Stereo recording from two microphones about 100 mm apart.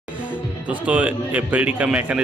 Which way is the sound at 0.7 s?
15° right (ahead or behind).